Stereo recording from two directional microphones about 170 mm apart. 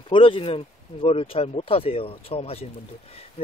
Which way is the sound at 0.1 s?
30° left (ahead or behind).